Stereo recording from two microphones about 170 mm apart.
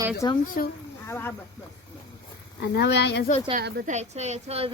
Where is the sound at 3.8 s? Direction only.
40° right (ahead or behind).